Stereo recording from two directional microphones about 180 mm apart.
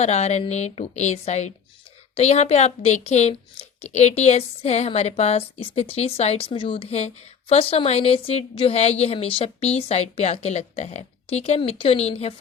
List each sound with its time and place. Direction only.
0.0 s a woman's voice: 35° left (ahead or behind)